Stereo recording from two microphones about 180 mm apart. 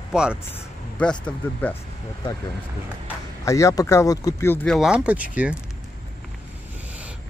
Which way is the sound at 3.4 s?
15° left (ahead or behind).